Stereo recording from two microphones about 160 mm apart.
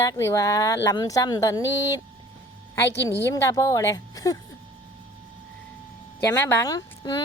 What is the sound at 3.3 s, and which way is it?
Speech, 20° left (ahead or behind).